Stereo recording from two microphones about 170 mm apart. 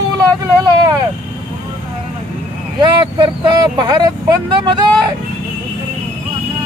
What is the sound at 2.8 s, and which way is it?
Vehicle, 25° right (ahead or behind).